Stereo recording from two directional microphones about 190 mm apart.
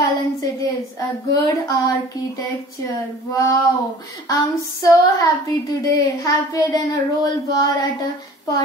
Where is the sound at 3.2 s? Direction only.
15° left (ahead or behind).